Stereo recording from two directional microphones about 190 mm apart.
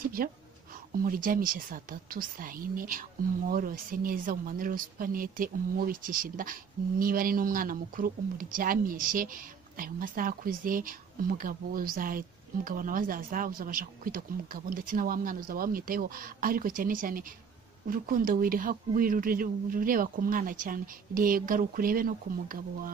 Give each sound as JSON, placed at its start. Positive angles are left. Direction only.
{"t": 0.2, "sound": "speech", "side_deg": -50}